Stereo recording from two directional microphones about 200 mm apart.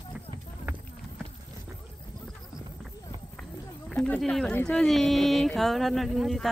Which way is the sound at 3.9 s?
5° left (ahead or behind).